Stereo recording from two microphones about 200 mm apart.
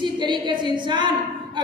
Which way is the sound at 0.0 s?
25° right (ahead or behind).